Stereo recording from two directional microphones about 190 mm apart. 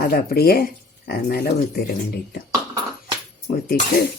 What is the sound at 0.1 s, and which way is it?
Speech, 55° left (ahead or behind).